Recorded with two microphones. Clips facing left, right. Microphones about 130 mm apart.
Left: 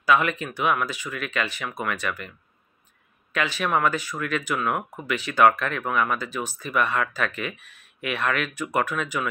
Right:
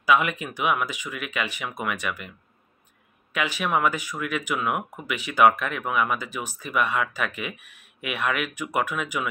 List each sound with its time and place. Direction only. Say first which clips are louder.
0.0 s speech: even; 10° right (ahead or behind)
3.3 s speech: left 1 dB; 15° right (ahead or behind)